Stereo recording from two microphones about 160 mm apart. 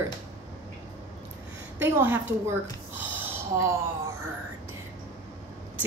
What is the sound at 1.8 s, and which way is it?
Speech, 15° right (ahead or behind).